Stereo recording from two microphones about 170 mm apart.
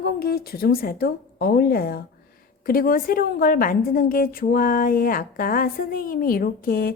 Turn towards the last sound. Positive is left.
turn(degrees=60)  # may be behind; listen again after turning